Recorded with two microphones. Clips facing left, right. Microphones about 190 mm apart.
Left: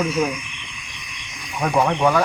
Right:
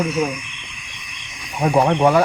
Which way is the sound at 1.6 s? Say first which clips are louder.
Right 3 dB; 25° right (ahead or behind).